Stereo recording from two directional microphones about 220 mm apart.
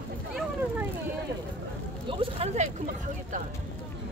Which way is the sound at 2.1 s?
25° right (ahead or behind).